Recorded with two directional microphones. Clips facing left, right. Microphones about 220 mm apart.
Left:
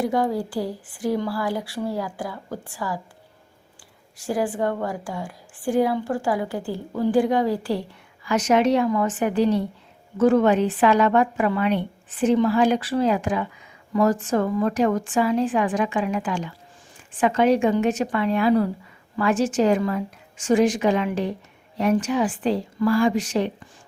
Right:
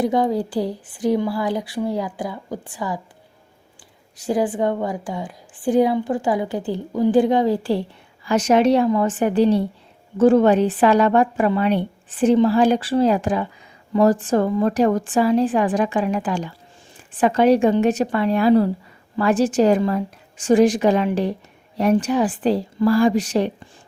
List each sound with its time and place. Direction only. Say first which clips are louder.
0.0 s a woman's voice: right 3 dB; 20° right (ahead or behind)
4.2 s a woman's voice: right 4 dB; 20° right (ahead or behind); by 23.5 s 35° right (ahead or behind)